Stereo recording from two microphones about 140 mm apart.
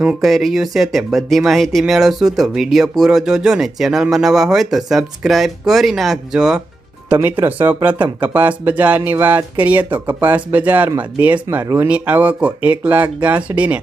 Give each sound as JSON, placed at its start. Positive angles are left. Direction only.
{"t": 0.0, "sound": "speech", "side_deg": -5}
{"t": 11.9, "sound": "speech", "side_deg": -10}